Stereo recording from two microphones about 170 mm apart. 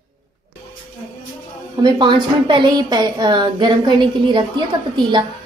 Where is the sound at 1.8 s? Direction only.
25° right (ahead or behind).